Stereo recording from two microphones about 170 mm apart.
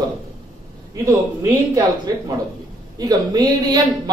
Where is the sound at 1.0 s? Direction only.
20° right (ahead or behind).